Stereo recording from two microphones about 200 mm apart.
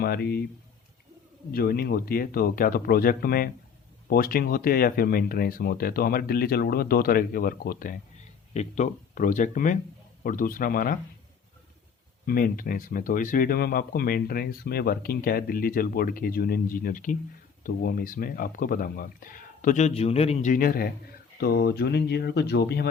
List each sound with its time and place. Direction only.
0.0 s speech: 50° left (ahead or behind)
1.5 s speech: 50° left (ahead or behind)
12.2 s speech: 45° left (ahead or behind)